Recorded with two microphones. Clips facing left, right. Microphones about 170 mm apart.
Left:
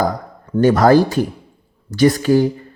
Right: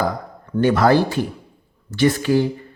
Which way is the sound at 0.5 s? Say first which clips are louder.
Left 4 dB; 40° left (ahead or behind).